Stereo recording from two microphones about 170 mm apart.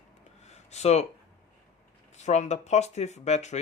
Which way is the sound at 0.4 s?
40° left (ahead or behind).